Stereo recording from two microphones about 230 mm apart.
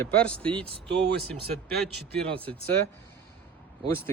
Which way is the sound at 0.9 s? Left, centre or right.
Right.